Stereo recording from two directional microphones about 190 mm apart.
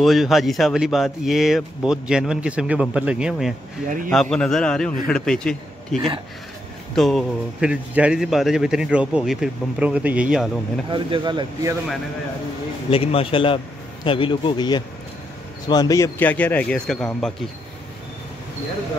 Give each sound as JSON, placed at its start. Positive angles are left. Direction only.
{"t": 0.0, "sound": "a man's voice", "side_deg": 0}
{"t": 5.9, "sound": "speech", "side_deg": -25}
{"t": 7.0, "sound": "a man's voice", "side_deg": 0}
{"t": 10.9, "sound": "speech", "side_deg": -25}
{"t": 12.9, "sound": "a man's voice", "side_deg": 30}